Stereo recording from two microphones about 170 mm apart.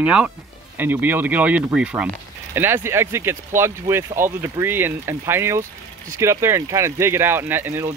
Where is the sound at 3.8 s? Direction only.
25° right (ahead or behind).